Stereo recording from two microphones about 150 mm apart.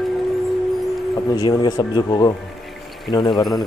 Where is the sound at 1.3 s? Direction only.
25° left (ahead or behind).